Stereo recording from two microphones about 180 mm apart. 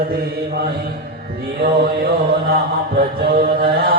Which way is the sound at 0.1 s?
60° right (ahead or behind).